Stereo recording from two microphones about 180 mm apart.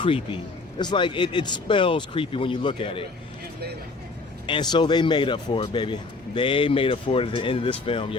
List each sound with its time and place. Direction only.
0.8 s a man's voice: 25° left (ahead or behind)
4.4 s a man's voice: 25° left (ahead or behind)